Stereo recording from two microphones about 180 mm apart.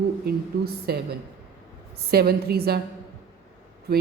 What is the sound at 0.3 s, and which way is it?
Speech, 65° right (ahead or behind).